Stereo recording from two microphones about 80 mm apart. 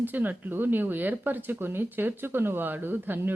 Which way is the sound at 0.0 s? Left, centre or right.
Right.